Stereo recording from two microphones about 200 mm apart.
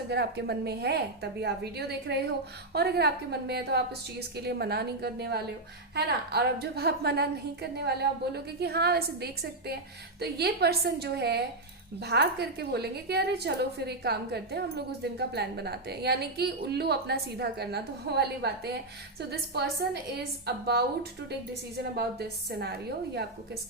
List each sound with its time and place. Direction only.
0.1 s a woman's voice: 55° right (ahead or behind)